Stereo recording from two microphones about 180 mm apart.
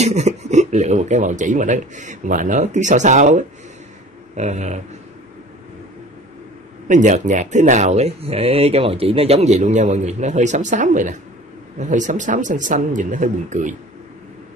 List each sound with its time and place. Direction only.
0.0 s speech: 40° right (ahead or behind)
6.9 s speech: 45° right (ahead or behind)